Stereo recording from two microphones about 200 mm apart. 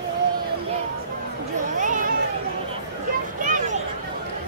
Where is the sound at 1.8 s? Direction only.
40° right (ahead or behind).